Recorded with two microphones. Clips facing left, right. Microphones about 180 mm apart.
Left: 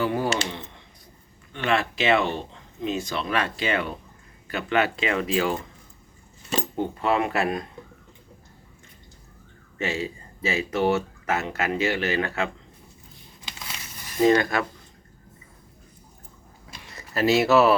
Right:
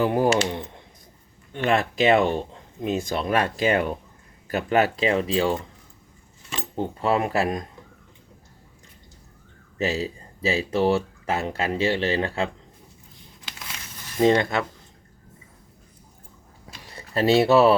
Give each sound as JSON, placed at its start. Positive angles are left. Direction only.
{"t": 0.0, "sound": "speech", "side_deg": -45}
{"t": 1.5, "sound": "speech", "side_deg": -45}
{"t": 6.7, "sound": "speech", "side_deg": -35}
{"t": 9.7, "sound": "speech", "side_deg": -35}
{"t": 14.2, "sound": "speech", "side_deg": -25}
{"t": 16.8, "sound": "speech", "side_deg": -30}